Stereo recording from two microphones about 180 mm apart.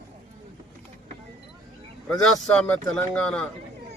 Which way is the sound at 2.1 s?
5° left (ahead or behind).